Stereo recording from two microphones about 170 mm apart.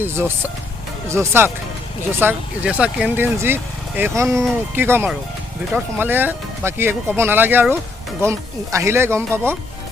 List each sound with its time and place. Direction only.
0.0 s speech: 15° right (ahead or behind)